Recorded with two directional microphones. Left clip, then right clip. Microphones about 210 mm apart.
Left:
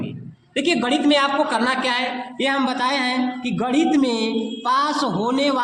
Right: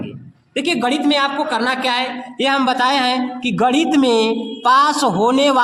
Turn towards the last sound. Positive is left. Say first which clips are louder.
# right 6 dB
turn(degrees=-35)  # may be behind; listen again after turning